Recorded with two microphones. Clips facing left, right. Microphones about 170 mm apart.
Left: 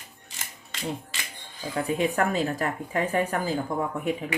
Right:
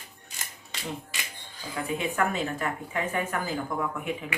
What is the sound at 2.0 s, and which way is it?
Speech, 35° left (ahead or behind).